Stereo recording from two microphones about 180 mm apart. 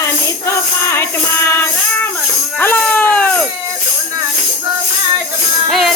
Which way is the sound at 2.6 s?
10° left (ahead or behind).